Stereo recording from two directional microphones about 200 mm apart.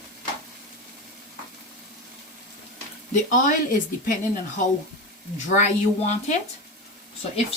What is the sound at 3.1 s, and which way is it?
Speech, 40° left (ahead or behind).